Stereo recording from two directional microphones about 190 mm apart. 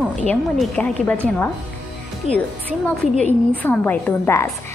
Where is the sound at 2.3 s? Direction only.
30° left (ahead or behind).